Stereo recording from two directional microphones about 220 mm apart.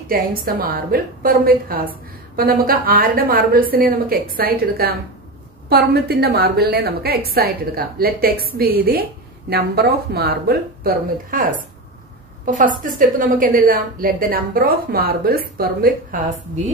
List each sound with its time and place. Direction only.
0.1 s a woman's voice: 40° right (ahead or behind)